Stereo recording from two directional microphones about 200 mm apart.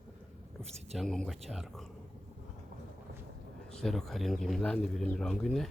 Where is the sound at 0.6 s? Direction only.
30° right (ahead or behind).